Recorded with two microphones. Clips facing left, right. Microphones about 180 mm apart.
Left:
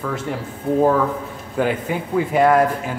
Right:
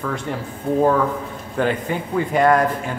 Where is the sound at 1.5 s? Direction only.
5° left (ahead or behind).